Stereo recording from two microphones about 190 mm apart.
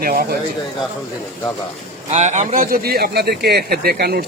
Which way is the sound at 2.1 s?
35° right (ahead or behind).